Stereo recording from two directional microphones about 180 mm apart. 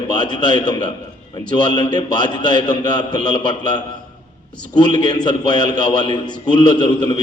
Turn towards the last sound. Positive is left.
turn(degrees=25)  # may be behind; listen again after turning